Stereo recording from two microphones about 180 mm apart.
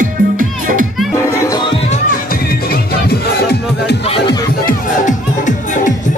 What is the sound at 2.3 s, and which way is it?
Music, 55° left (ahead or behind).